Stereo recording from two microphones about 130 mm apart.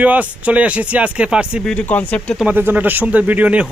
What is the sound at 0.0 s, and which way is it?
Speech, 10° right (ahead or behind).